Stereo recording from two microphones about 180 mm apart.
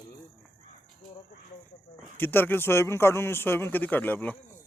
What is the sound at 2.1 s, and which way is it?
Speech, 10° left (ahead or behind).